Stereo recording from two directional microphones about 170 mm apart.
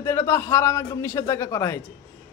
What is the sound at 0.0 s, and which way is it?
Speech, 15° left (ahead or behind).